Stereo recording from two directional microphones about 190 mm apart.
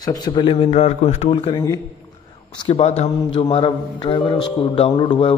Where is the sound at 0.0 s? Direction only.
20° left (ahead or behind).